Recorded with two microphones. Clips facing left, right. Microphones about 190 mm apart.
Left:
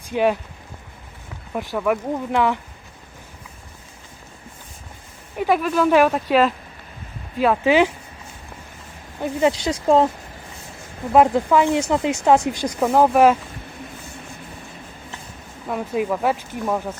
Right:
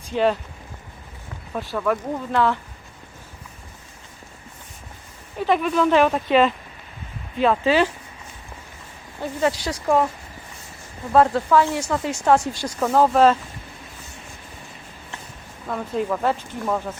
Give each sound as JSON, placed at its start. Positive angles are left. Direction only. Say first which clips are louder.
{"t": 0.1, "sound": "speech", "louder": "left 1 dB", "side_deg": 10}
{"t": 1.5, "sound": "speech", "louder": "left 2 dB", "side_deg": 15}
{"t": 5.4, "sound": "speech", "louder": "left 1 dB", "side_deg": 5}
{"t": 9.2, "sound": "speech", "louder": "left 3 dB", "side_deg": 20}
{"t": 11.1, "sound": "speech", "louder": "left 1 dB", "side_deg": 15}
{"t": 15.6, "sound": "speech", "louder": "left 2 dB", "side_deg": 10}